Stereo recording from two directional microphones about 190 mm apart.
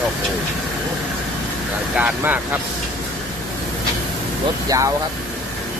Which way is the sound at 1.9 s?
10° right (ahead or behind).